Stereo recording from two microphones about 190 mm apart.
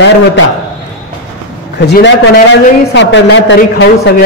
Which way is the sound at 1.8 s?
60° left (ahead or behind).